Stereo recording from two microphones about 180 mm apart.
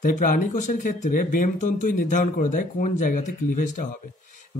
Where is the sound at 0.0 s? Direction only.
50° left (ahead or behind).